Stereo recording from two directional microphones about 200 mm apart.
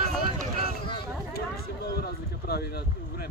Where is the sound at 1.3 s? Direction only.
50° left (ahead or behind).